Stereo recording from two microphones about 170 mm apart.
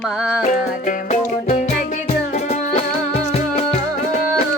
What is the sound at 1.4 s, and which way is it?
Music, 40° left (ahead or behind).